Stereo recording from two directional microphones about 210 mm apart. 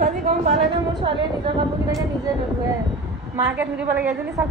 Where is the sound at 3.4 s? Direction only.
10° right (ahead or behind).